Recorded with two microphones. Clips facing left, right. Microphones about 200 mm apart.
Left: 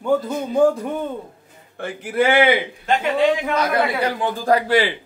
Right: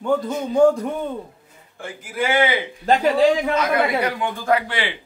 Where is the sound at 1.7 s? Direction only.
60° left (ahead or behind).